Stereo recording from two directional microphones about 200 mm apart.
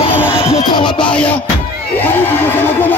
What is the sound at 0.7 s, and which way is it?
Music, 25° left (ahead or behind).